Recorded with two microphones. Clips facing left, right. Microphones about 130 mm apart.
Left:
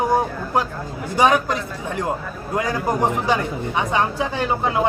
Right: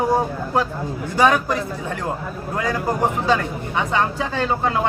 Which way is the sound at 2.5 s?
15° left (ahead or behind).